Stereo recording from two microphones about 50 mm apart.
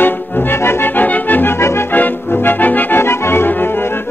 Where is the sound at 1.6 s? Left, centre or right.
Left.